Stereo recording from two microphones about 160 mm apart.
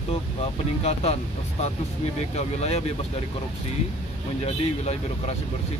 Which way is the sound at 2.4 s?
40° left (ahead or behind).